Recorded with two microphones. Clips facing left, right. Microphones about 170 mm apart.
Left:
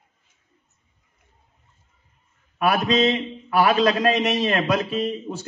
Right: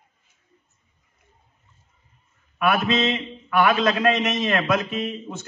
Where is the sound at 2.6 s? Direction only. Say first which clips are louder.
Left 2 dB; 35° left (ahead or behind).